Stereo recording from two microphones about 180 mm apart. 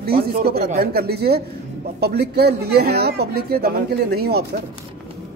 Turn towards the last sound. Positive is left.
turn(degrees=-60)  # may be behind; listen again after turning